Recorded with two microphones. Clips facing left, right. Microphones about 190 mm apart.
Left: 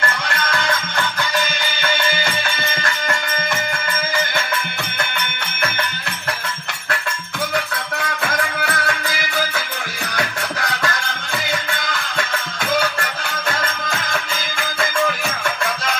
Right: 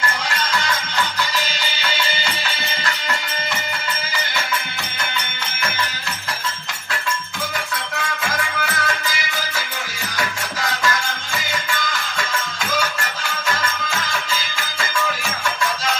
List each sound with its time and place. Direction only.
0.3 s music: 55° left (ahead or behind)
5.1 s music: 60° left (ahead or behind)
8.2 s music: 60° left (ahead or behind)
13.6 s music: 55° left (ahead or behind)